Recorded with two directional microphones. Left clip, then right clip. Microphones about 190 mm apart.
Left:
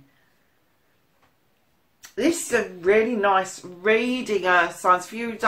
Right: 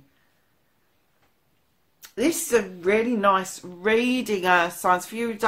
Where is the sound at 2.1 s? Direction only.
45° right (ahead or behind).